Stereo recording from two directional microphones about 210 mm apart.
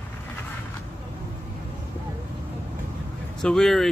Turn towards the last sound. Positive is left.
turn(degrees=0)  # may be behind; listen again after turning